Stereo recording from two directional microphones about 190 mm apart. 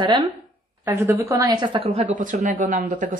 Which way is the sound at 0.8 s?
10° right (ahead or behind).